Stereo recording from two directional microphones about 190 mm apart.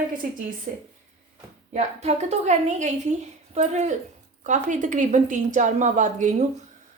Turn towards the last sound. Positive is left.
turn(degrees=-40)  # may be behind; listen again after turning